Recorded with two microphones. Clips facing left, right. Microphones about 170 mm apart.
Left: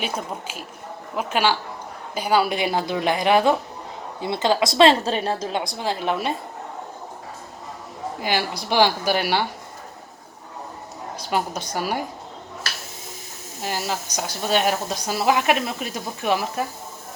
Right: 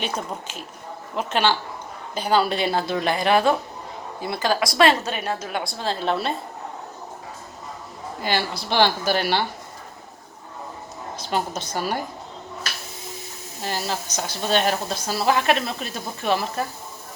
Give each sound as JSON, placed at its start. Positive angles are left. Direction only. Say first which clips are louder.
{"t": 0.0, "sound": "a woman's voice", "louder": "even", "side_deg": 10}
{"t": 8.2, "sound": "a woman's voice", "louder": "even", "side_deg": 15}
{"t": 11.2, "sound": "a woman's voice", "louder": "left 1 dB", "side_deg": 10}
{"t": 13.6, "sound": "a woman's voice", "louder": "left 1 dB", "side_deg": 10}